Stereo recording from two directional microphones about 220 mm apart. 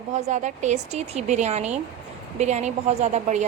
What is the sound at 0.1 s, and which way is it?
Speech, 30° right (ahead or behind).